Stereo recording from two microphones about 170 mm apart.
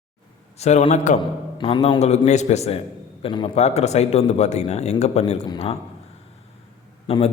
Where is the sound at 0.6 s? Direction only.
40° left (ahead or behind).